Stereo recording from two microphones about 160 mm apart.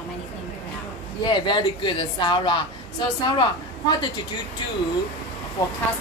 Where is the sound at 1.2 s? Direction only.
30° left (ahead or behind).